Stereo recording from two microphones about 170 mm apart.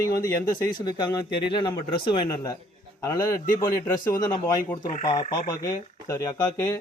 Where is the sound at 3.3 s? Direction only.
55° left (ahead or behind).